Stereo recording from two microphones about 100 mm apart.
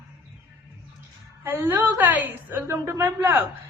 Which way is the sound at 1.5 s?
20° right (ahead or behind).